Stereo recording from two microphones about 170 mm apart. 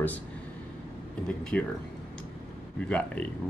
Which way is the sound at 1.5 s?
10° left (ahead or behind).